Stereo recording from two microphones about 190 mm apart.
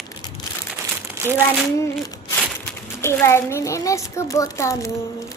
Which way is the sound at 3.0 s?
15° left (ahead or behind).